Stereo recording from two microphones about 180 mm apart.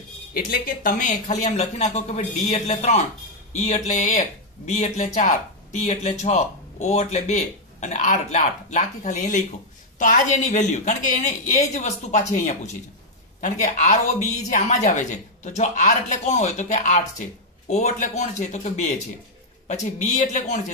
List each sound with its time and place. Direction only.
0.3 s speech: 50° left (ahead or behind)